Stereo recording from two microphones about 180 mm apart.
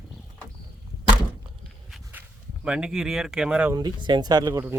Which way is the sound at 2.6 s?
5° right (ahead or behind).